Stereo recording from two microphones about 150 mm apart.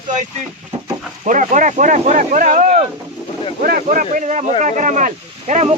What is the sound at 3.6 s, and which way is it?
Speech, 65° right (ahead or behind).